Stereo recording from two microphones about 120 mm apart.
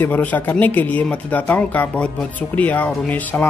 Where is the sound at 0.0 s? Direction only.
15° left (ahead or behind).